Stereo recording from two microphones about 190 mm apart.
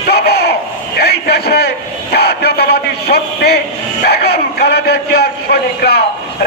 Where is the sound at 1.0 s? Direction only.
60° left (ahead or behind).